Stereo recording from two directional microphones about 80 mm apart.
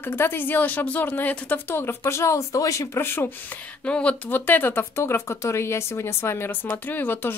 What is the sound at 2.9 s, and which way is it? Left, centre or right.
Speech, left.